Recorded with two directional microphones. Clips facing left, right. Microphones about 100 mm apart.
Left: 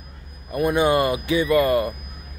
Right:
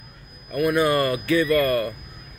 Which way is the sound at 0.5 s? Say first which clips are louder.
Left 1 dB; 20° left (ahead or behind).